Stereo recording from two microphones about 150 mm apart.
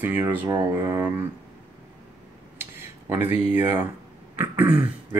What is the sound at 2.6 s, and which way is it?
Speech, 15° right (ahead or behind).